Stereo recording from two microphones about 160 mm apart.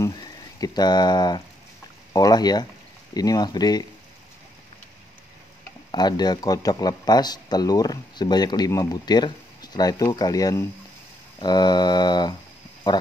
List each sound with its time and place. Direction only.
0.0 s speech: 25° left (ahead or behind)
5.9 s speech: 25° left (ahead or behind)